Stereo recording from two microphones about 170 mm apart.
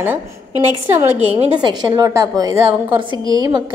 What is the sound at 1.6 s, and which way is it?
A woman's voice, 20° right (ahead or behind).